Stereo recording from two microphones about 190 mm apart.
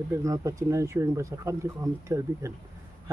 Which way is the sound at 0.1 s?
15° right (ahead or behind).